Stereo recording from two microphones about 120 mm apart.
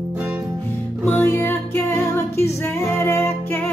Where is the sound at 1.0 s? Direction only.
15° left (ahead or behind).